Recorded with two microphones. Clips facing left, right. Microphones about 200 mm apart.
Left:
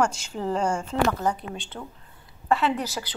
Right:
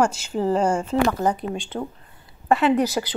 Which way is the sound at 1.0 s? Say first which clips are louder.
Even; 15° right (ahead or behind).